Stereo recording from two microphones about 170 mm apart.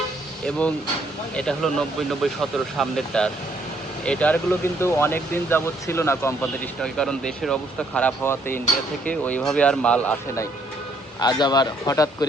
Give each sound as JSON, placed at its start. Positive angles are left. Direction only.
{"t": 1.4, "sound": "speech", "side_deg": 5}
{"t": 6.8, "sound": "speech", "side_deg": 5}
{"t": 11.2, "sound": "speech", "side_deg": 25}